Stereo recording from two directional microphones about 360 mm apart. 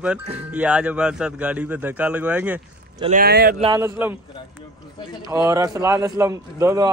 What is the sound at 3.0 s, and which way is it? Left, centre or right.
Speech, right.